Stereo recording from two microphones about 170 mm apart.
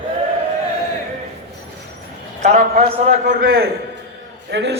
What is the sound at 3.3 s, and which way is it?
Speech, 60° right (ahead or behind).